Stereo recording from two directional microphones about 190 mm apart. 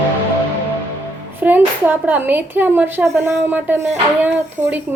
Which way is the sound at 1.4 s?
10° right (ahead or behind).